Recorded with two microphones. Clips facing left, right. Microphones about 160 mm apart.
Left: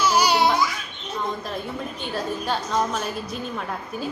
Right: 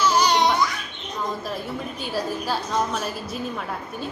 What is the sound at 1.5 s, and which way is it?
A woman's voice, 5° right (ahead or behind).